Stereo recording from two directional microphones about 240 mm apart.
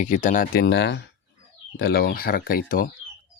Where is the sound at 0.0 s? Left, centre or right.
Left.